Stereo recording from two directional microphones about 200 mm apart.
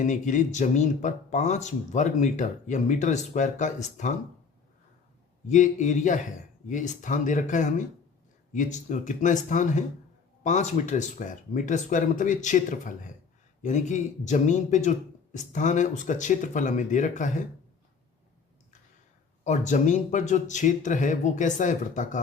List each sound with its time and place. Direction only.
0.0 s speech: 40° left (ahead or behind)
5.5 s speech: 40° left (ahead or behind)
19.5 s speech: 35° left (ahead or behind)